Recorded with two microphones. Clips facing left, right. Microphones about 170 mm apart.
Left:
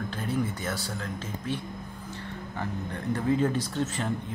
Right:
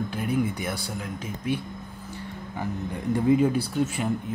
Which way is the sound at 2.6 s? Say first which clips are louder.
Right 3 dB; 10° right (ahead or behind).